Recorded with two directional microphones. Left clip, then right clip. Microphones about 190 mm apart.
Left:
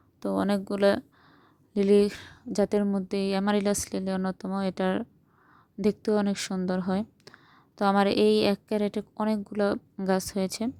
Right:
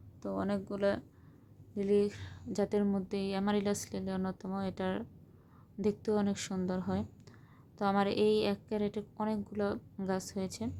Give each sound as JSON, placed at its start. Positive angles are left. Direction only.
{"t": 0.2, "sound": "a woman's voice", "side_deg": 45}